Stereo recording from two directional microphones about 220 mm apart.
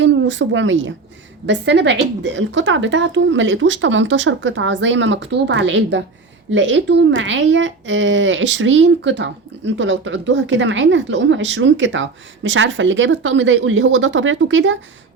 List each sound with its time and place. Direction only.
0.0 s a woman's voice: 55° right (ahead or behind)